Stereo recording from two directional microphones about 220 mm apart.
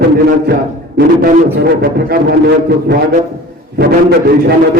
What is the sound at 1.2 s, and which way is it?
A man's voice, 45° right (ahead or behind).